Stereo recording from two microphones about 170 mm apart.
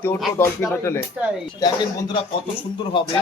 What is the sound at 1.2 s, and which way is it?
Speech, 10° right (ahead or behind).